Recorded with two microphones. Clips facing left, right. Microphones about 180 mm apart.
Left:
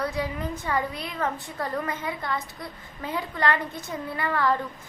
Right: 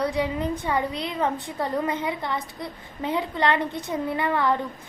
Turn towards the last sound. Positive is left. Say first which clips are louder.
# right 2 dB
turn(degrees=-20)  # may be behind; listen again after turning